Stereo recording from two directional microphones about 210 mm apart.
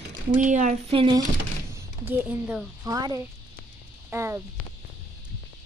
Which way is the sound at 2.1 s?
5° right (ahead or behind).